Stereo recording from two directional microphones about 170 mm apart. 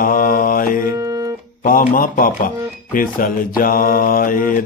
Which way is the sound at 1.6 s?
55° left (ahead or behind).